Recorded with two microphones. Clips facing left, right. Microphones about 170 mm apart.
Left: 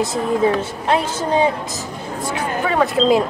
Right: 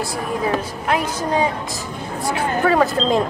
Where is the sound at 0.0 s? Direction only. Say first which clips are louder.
Left 5 dB; 25° left (ahead or behind).